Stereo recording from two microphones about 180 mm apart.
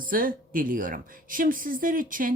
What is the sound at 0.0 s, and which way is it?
A woman's voice, 50° right (ahead or behind).